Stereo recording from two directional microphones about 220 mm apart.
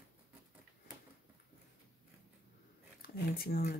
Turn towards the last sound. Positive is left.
turn(degrees=45)  # may be behind; listen again after turning